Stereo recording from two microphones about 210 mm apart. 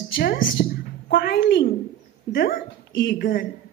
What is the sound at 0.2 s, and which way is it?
A woman's voice, 50° left (ahead or behind).